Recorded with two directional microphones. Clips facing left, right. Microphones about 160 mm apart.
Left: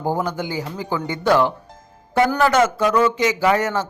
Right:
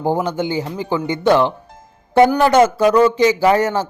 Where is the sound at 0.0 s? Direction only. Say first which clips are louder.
Right 4 dB; 25° right (ahead or behind).